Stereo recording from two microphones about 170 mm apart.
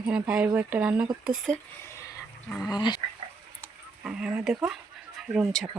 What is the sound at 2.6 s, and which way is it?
Speech, 25° left (ahead or behind).